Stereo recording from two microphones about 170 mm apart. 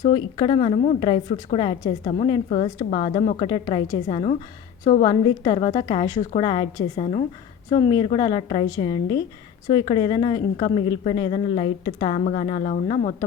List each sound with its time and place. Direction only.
0.1 s a woman's voice: 30° left (ahead or behind)